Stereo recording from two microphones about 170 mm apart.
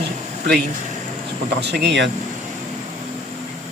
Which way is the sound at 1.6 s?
80° right.